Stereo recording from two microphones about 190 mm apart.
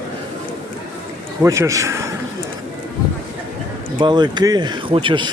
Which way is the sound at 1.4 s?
15° right (ahead or behind).